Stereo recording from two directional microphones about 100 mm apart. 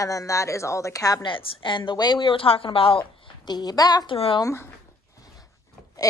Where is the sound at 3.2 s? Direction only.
45° left (ahead or behind).